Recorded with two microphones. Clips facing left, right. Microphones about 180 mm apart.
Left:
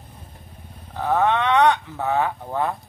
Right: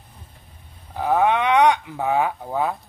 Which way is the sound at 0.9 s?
10° right (ahead or behind).